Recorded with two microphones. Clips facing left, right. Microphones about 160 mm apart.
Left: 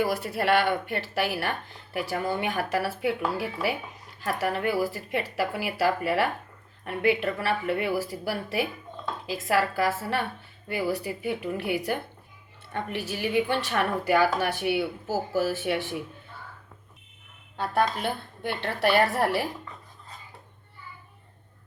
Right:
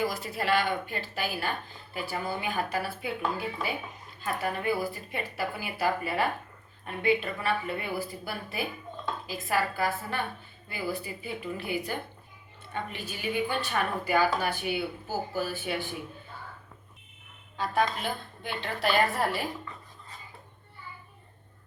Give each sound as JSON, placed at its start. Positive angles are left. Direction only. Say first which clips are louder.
{"t": 0.0, "sound": "a woman's voice", "louder": "left 4 dB", "side_deg": 65}
{"t": 18.4, "sound": "a woman's voice", "louder": "left 4 dB", "side_deg": 65}